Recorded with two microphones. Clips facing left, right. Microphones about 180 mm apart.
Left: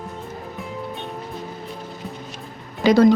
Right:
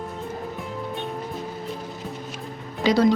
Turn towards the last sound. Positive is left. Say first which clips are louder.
# left 5 dB
turn(degrees=50)  # may be behind; listen again after turning